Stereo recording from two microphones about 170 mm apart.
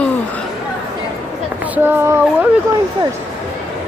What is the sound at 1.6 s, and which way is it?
Child singing, 10° right (ahead or behind).